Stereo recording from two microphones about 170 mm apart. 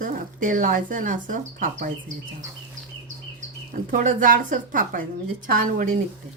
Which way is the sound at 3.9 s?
50° right (ahead or behind).